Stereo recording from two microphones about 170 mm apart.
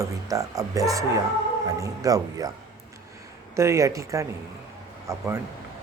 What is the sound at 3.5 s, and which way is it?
Speech, 15° right (ahead or behind).